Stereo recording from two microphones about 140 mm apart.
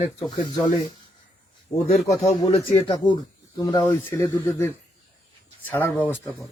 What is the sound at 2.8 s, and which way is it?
Speech, 30° left (ahead or behind).